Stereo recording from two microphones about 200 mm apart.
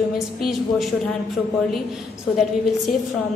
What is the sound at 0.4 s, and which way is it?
Speech, centre (ahead or behind).